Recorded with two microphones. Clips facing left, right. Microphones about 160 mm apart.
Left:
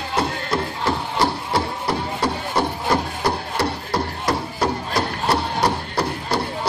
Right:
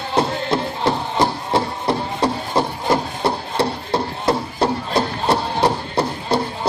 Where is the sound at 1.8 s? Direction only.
25° right (ahead or behind).